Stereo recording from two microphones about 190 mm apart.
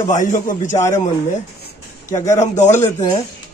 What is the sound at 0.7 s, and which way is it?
Speech, 15° left (ahead or behind).